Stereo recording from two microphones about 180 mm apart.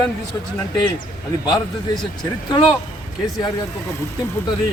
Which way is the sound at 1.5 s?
20° left (ahead or behind).